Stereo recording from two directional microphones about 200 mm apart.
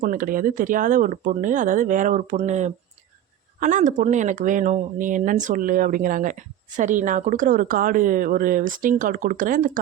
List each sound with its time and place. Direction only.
0.0 s speech: 45° right (ahead or behind)